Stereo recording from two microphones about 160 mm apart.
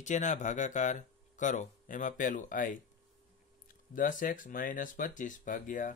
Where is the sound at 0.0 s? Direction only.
50° left (ahead or behind).